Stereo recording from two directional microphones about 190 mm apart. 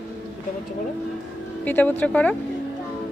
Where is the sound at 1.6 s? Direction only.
10° left (ahead or behind).